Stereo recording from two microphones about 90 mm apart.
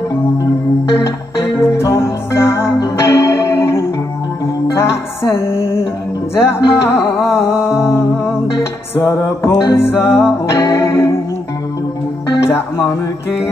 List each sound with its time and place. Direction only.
1.6 s music: 30° left (ahead or behind)
8.9 s music: 30° left (ahead or behind)
12.4 s speech: 30° left (ahead or behind)